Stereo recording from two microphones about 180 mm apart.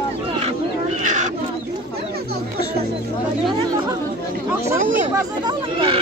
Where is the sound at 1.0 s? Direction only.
45° right (ahead or behind).